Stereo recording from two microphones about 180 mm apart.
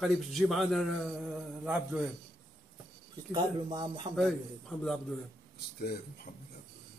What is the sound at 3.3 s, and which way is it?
Speech, 25° right (ahead or behind).